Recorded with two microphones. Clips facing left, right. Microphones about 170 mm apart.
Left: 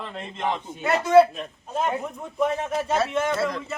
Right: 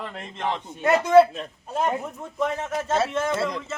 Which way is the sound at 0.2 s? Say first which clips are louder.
Left 2 dB; 10° left (ahead or behind).